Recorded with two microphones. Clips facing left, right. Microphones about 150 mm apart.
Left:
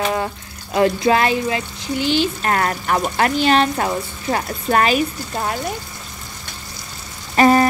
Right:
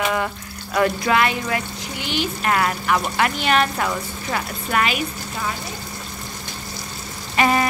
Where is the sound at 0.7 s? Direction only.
25° left (ahead or behind).